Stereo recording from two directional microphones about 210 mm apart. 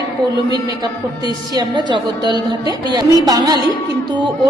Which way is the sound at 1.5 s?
20° right (ahead or behind).